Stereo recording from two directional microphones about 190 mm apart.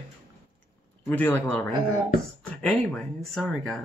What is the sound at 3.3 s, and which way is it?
Speech, centre (ahead or behind).